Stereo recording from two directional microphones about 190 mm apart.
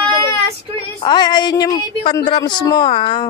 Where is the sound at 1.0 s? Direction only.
25° left (ahead or behind).